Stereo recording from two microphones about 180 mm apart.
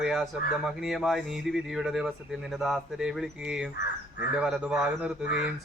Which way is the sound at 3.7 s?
65° left (ahead or behind).